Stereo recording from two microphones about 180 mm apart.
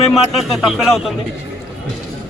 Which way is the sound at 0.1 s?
Centre (ahead or behind).